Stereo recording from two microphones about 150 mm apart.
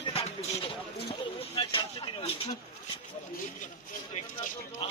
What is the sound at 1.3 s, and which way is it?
Vehicle, 35° left (ahead or behind).